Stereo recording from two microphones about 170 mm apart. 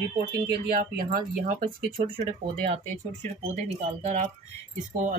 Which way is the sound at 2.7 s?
40° right (ahead or behind).